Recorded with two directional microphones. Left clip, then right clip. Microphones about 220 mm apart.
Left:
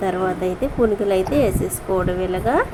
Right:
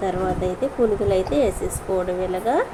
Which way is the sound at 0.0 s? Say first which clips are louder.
Left 2 dB; 20° left (ahead or behind).